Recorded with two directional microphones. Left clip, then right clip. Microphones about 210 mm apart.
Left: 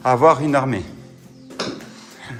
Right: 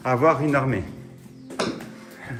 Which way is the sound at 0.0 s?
15° left (ahead or behind).